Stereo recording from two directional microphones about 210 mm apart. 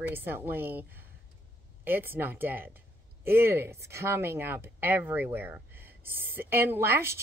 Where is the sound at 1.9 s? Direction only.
10° right (ahead or behind).